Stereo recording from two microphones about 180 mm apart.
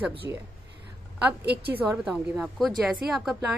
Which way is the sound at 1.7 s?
5° right (ahead or behind).